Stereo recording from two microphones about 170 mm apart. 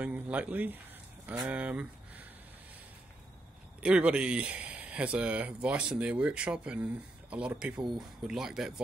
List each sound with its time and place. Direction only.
0.0 s speech: 10° right (ahead or behind)
3.8 s speech: 5° right (ahead or behind)